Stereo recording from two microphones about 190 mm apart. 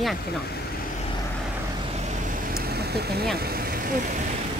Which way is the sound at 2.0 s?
40° right (ahead or behind).